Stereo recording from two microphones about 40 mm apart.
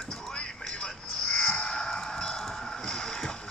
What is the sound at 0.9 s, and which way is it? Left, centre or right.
Frog, centre.